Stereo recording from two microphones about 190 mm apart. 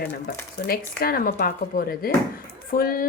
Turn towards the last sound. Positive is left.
turn(degrees=50)  # may be behind; listen again after turning